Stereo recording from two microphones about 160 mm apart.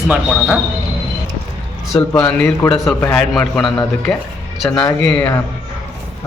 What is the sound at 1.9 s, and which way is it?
A man's voice, 10° left (ahead or behind).